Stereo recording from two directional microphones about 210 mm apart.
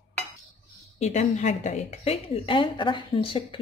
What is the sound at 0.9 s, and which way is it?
A woman's voice, 30° left (ahead or behind).